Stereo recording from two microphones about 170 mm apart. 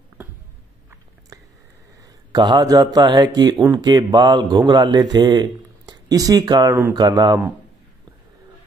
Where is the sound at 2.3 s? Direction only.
25° right (ahead or behind).